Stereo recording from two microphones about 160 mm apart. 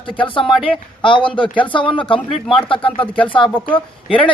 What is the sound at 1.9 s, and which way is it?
Speech, 30° left (ahead or behind).